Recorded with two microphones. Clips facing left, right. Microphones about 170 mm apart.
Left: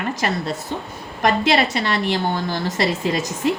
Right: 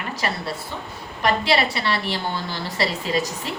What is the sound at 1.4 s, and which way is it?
A woman's voice, 45° left (ahead or behind).